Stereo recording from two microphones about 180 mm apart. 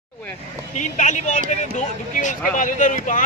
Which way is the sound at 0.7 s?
40° left (ahead or behind).